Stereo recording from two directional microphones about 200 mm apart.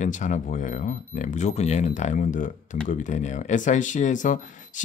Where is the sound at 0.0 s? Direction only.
40° left (ahead or behind).